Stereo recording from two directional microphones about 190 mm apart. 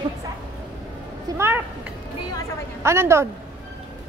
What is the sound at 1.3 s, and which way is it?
Speech, 15° right (ahead or behind).